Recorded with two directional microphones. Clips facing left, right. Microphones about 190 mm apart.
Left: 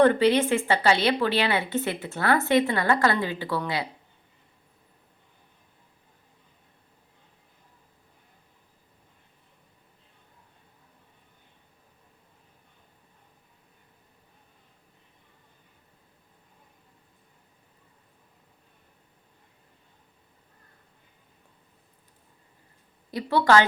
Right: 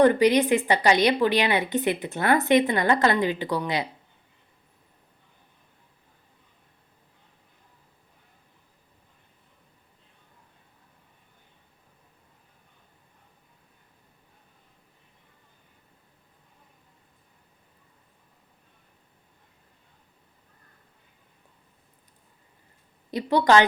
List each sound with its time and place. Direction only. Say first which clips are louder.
0.0 s a woman's voice: right 1 dB; 15° right (ahead or behind)
23.1 s a woman's voice: right 1 dB; 20° right (ahead or behind)